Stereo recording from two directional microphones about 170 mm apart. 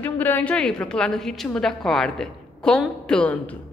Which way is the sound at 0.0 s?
10° left (ahead or behind).